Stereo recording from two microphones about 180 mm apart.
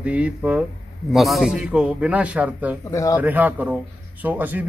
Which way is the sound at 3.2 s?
10° right (ahead or behind).